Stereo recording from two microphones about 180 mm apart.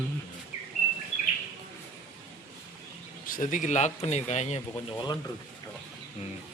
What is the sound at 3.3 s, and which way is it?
Speech, 45° left (ahead or behind).